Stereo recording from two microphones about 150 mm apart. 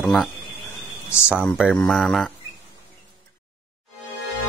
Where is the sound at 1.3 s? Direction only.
5° right (ahead or behind).